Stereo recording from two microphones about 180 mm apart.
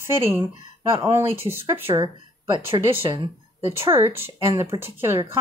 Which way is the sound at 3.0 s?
25° right (ahead or behind).